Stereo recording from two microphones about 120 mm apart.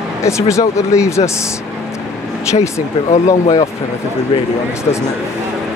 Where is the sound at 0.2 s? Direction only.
25° left (ahead or behind).